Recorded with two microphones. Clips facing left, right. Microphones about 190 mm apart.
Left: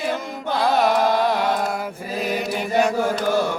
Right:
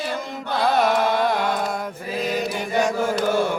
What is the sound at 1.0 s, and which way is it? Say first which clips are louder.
Carnatic music: left 1 dB; 55° right (ahead or behind).